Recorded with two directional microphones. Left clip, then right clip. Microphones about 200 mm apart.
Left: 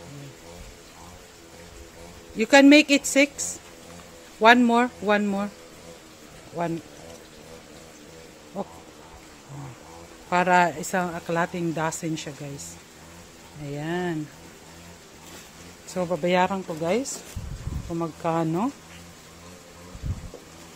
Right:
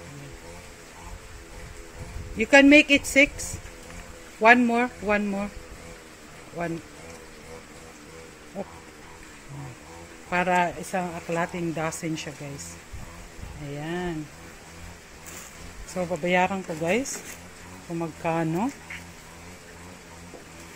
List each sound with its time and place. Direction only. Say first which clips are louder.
2.3 s a woman's voice: even; 20° left (ahead or behind)
10.3 s a woman's voice: left 3 dB; 25° left (ahead or behind)
13.7 s speech: left 3 dB; 25° left (ahead or behind)
15.9 s a woman's voice: left 1 dB; 20° left (ahead or behind)
16.9 s speech: even; centre (ahead or behind)
17.9 s a woman's voice: left 1 dB; 15° left (ahead or behind)